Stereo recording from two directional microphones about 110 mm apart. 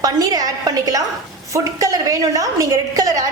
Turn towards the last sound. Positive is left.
turn(degrees=-30)  # may be behind; listen again after turning